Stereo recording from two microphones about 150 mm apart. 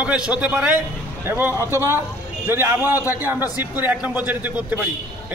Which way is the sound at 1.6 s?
20° left (ahead or behind).